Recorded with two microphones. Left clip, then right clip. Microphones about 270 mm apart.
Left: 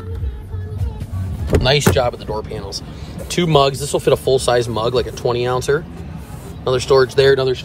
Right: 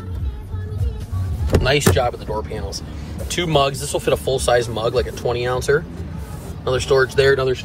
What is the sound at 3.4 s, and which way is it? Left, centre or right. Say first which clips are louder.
Speech: left 3 dB; left.